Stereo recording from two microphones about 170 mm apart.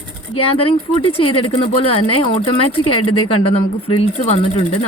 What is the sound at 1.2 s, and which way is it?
Speech, 35° left (ahead or behind).